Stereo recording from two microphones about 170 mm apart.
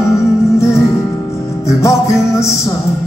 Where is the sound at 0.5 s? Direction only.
15° left (ahead or behind).